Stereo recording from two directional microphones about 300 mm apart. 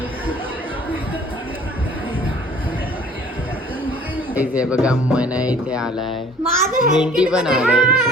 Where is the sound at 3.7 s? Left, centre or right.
Centre.